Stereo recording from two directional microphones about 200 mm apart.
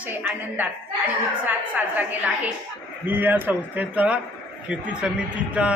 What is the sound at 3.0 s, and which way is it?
A woman's voice, 10° right (ahead or behind).